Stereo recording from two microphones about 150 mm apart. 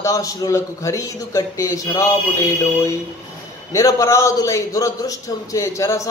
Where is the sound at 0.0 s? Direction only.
20° left (ahead or behind).